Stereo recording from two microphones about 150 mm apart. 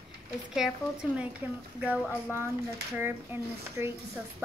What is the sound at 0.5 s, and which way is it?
Speech, 5° right (ahead or behind).